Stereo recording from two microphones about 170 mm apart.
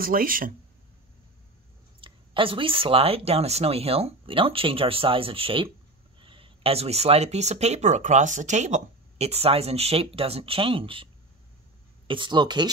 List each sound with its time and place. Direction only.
0.0 s speech: 55° right (ahead or behind)
2.0 s speech: 30° right (ahead or behind)
12.1 s speech: 25° right (ahead or behind)